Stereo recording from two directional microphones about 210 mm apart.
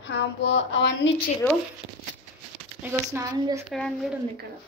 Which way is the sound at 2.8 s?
10° right (ahead or behind).